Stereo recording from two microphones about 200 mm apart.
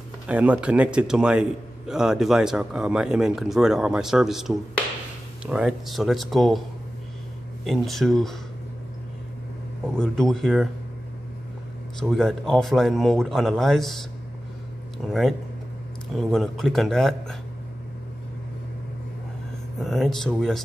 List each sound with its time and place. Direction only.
0.3 s a man's voice: 5° right (ahead or behind)
7.6 s a man's voice: centre (ahead or behind)
9.9 s a man's voice: 5° left (ahead or behind)
12.0 s a man's voice: centre (ahead or behind)
15.0 s a man's voice: centre (ahead or behind)
19.8 s a man's voice: centre (ahead or behind)